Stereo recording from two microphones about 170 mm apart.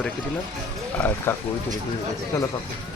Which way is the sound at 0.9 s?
10° left (ahead or behind).